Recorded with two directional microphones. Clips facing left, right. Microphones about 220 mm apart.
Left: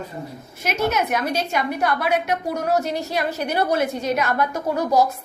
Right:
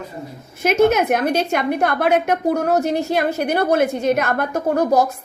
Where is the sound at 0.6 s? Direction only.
50° right (ahead or behind).